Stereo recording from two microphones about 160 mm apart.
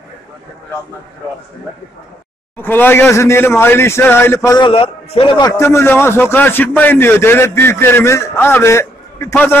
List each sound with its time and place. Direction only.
2.5 s a man's voice: 10° left (ahead or behind)
4.6 s a man's voice: 30° left (ahead or behind)
5.5 s a man's voice: 15° left (ahead or behind)